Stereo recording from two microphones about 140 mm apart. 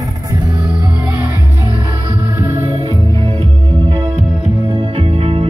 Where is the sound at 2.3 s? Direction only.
20° right (ahead or behind).